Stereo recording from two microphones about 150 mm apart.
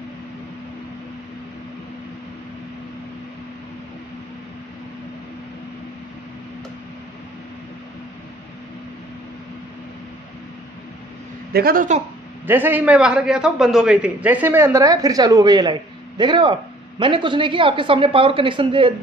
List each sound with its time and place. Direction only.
11.5 s speech: 80° right
12.4 s a man's voice: 15° right (ahead or behind); by 18.9 s 35° right (ahead or behind)